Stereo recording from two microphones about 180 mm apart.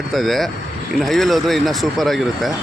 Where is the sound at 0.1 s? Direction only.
Centre (ahead or behind).